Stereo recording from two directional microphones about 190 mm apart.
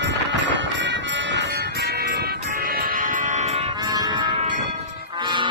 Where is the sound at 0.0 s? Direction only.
70° right (ahead or behind).